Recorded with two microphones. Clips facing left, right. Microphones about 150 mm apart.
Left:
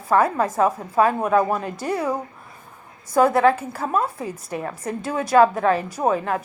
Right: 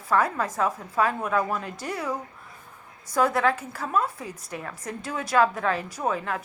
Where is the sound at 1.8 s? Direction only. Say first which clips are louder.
Left 6 dB; 25° left (ahead or behind).